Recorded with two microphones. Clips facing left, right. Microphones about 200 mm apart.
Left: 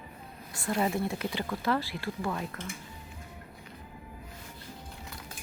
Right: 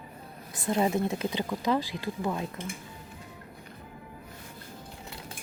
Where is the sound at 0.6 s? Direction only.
20° right (ahead or behind).